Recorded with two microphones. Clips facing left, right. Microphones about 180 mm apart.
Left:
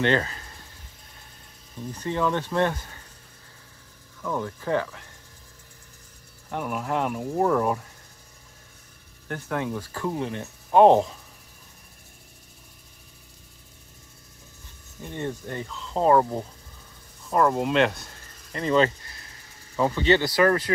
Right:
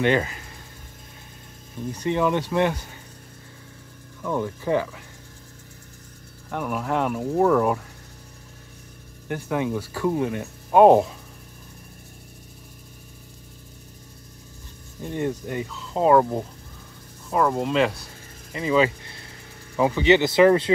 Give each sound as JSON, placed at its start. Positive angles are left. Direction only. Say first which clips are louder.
{"t": 0.0, "sound": "speech", "louder": "right 2 dB", "side_deg": -10}
{"t": 2.0, "sound": "speech", "louder": "right 3 dB", "side_deg": -15}
{"t": 4.2, "sound": "speech", "louder": "right 3 dB", "side_deg": -10}
{"t": 6.5, "sound": "speech", "louder": "right 2 dB", "side_deg": 0}
{"t": 9.3, "sound": "speech", "louder": "right 4 dB", "side_deg": -10}
{"t": 15.1, "sound": "speech", "louder": "right 5 dB", "side_deg": -15}
{"t": 17.3, "sound": "speech", "louder": "even", "side_deg": 0}